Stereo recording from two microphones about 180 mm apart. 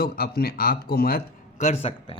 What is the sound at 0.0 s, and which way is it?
A man's voice, 60° left (ahead or behind).